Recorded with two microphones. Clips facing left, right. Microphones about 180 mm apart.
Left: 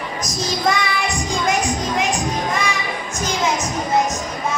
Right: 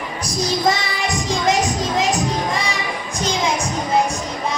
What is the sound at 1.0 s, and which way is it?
Music, 20° right (ahead or behind).